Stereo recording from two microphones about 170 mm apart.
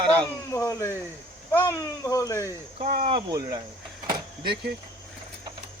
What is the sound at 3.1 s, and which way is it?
Speech, 25° right (ahead or behind).